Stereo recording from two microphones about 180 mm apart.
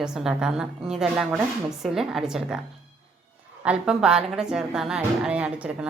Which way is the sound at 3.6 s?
5° right (ahead or behind).